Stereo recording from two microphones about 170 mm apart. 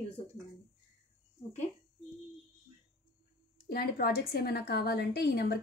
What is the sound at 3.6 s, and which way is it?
A woman's voice, 60° left (ahead or behind).